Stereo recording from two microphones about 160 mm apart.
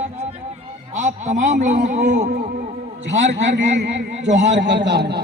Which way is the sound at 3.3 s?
90° right.